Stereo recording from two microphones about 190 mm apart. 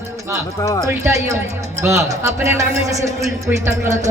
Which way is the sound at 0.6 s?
20° left (ahead or behind).